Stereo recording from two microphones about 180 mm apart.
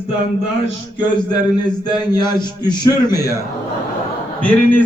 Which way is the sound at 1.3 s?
25° left (ahead or behind).